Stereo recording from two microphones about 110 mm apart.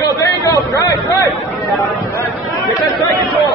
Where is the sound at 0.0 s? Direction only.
30° left (ahead or behind).